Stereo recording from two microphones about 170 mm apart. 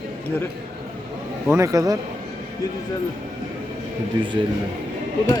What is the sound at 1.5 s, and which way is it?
Speech, 20° right (ahead or behind).